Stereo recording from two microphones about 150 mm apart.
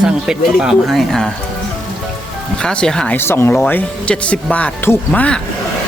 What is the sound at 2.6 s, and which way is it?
Speech, 5° left (ahead or behind).